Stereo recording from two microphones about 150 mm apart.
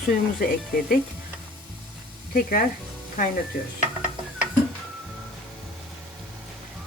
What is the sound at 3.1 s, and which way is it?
Speech, 70° left (ahead or behind).